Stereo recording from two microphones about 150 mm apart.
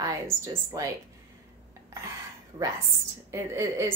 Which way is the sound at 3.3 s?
20° right (ahead or behind).